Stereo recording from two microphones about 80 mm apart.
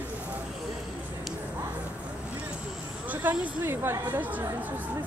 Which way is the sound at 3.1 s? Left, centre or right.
Right.